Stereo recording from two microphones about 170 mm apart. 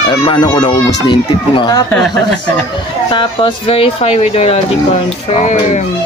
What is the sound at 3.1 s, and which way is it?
Speech, 30° left (ahead or behind).